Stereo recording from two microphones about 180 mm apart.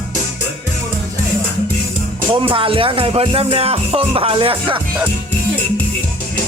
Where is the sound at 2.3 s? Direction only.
30° right (ahead or behind).